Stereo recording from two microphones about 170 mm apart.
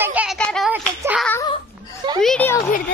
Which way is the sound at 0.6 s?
10° right (ahead or behind).